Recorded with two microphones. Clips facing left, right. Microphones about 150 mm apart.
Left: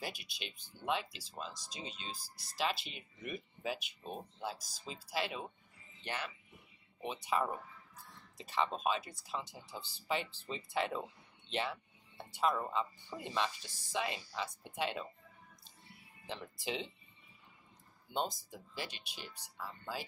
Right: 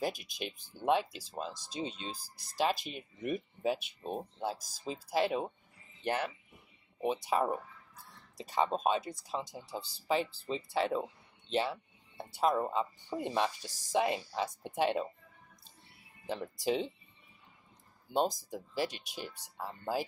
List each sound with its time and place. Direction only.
0.0 s speech: 45° right (ahead or behind)
13.2 s speech: 45° right (ahead or behind)
16.3 s speech: 40° right (ahead or behind)
18.1 s speech: 40° right (ahead or behind)